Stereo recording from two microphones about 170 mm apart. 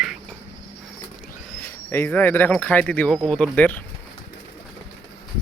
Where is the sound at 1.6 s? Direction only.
10° left (ahead or behind).